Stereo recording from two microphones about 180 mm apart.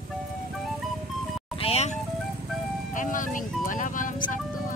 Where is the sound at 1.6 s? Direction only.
35° left (ahead or behind).